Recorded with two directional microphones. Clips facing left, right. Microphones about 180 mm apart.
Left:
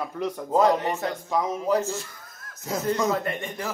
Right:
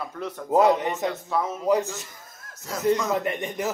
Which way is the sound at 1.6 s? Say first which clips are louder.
Right 5 dB; 15° right (ahead or behind).